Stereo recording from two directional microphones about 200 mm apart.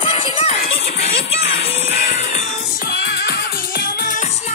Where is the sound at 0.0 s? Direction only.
25° left (ahead or behind).